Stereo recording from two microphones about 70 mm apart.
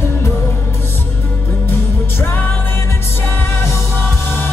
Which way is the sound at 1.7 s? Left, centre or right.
Left.